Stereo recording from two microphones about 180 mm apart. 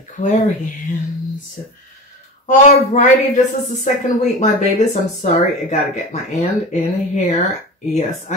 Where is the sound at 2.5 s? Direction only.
45° left (ahead or behind).